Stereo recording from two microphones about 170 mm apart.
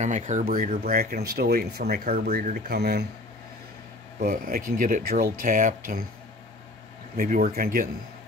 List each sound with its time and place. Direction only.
0.0 s speech: 45° right (ahead or behind)
2.7 s speech: 75° right (ahead or behind)
4.2 s speech: 55° right (ahead or behind)
7.2 s speech: 55° right (ahead or behind)